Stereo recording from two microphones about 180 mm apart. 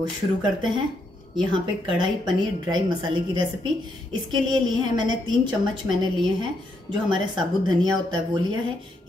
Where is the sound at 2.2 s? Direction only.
25° right (ahead or behind).